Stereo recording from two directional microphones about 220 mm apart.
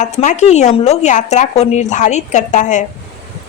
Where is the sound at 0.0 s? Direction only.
30° left (ahead or behind).